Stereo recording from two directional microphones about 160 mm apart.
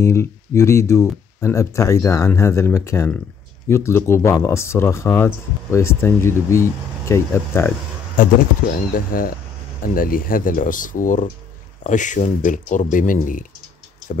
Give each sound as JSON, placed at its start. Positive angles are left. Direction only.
{"t": 0.0, "sound": "speech", "side_deg": 15}
{"t": 8.2, "sound": "speech", "side_deg": 60}